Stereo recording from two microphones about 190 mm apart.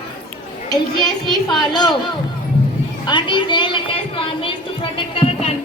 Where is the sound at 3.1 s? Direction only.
25° left (ahead or behind).